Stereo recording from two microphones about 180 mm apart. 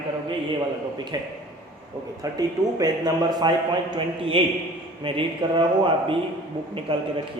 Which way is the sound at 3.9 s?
30° right (ahead or behind).